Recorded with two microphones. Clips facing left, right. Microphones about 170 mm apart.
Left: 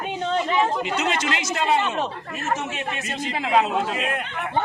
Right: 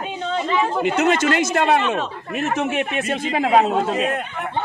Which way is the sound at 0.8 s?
55° right (ahead or behind).